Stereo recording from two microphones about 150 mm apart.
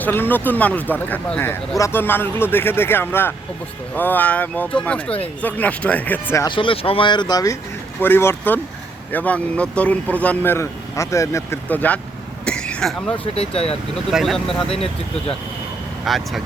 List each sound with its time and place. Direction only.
0.0 s speech: 15° left (ahead or behind)
6.4 s speech: 35° left (ahead or behind)
8.0 s speech: 15° left (ahead or behind)
12.5 s a sound: 5° left (ahead or behind)
13.3 s speech: 40° left (ahead or behind)
14.1 s speech: centre (ahead or behind)
16.0 s speech: centre (ahead or behind)